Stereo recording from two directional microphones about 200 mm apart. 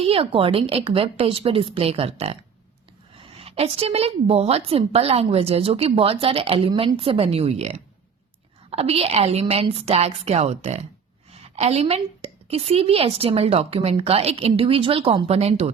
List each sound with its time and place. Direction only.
0.0 s a woman's voice: 30° right (ahead or behind)